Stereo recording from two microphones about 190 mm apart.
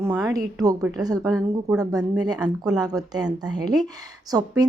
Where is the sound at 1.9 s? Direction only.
20° right (ahead or behind).